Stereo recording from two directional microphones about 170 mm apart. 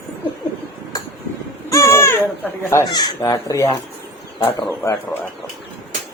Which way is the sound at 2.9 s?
25° left (ahead or behind).